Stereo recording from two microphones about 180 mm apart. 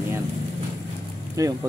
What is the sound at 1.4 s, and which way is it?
Speech, 20° right (ahead or behind).